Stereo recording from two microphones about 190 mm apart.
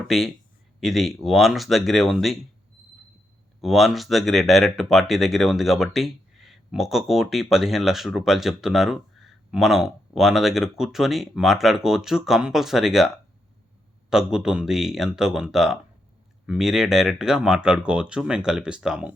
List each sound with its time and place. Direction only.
0.8 s speech: centre (ahead or behind)
3.6 s speech: centre (ahead or behind)
14.1 s speech: 5° right (ahead or behind)